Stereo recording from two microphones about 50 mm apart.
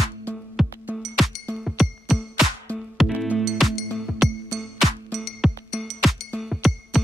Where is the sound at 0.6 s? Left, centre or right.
Centre.